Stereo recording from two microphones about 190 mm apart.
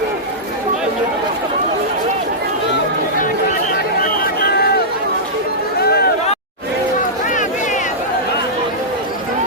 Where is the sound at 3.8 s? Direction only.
50° left (ahead or behind).